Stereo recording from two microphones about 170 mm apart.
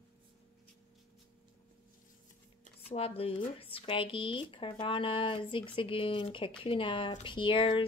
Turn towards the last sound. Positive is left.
turn(degrees=30)  # may be behind; listen again after turning